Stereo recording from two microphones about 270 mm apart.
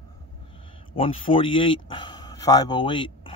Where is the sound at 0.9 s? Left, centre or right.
Centre.